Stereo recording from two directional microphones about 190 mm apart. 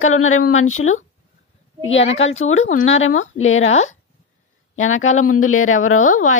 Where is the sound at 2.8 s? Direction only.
90° left.